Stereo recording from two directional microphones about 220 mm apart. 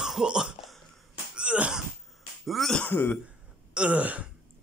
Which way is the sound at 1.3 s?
5° right (ahead or behind).